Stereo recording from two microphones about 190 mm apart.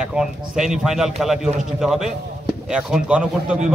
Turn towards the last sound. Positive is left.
turn(degrees=-5)  # may be behind; listen again after turning